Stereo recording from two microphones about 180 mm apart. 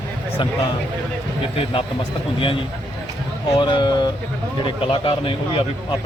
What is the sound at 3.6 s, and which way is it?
Speech, 25° left (ahead or behind).